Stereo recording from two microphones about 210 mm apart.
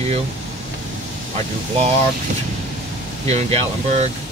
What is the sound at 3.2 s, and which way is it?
Speech, 30° right (ahead or behind).